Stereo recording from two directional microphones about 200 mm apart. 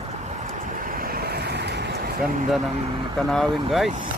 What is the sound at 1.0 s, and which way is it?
Vehicle, 50° right (ahead or behind).